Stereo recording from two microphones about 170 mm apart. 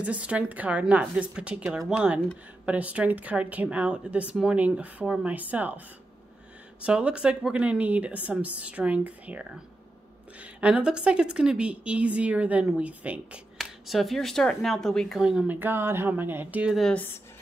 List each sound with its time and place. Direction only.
0.0 s a woman's voice: 10° right (ahead or behind)
6.8 s a woman's voice: 5° right (ahead or behind)